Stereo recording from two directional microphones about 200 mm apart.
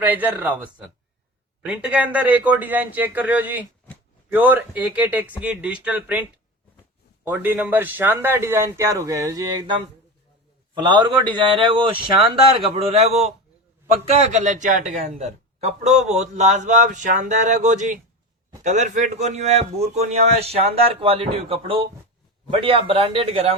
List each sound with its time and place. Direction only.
0.0 s speech: 10° right (ahead or behind)
1.6 s speech: 5° right (ahead or behind)
7.3 s a man's voice: 10° right (ahead or behind); by 23.6 s 30° right (ahead or behind)